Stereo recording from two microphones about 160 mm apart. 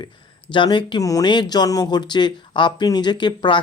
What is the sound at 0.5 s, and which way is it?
Speech, 30° left (ahead or behind).